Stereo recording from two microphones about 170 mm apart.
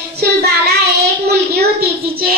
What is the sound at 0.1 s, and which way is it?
Child singing, 70° right (ahead or behind).